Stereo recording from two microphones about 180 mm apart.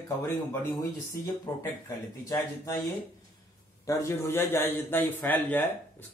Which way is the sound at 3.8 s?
15° left (ahead or behind).